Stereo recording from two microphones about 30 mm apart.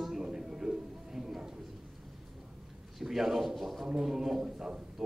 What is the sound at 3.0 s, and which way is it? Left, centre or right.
A man's voice, centre.